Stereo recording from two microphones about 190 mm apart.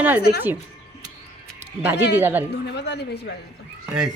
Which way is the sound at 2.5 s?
65° left (ahead or behind).